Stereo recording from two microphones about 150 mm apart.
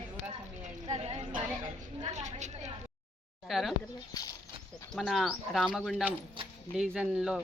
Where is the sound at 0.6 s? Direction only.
45° right (ahead or behind).